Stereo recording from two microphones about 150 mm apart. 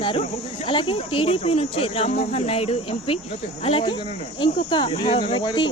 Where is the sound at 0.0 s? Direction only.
35° left (ahead or behind).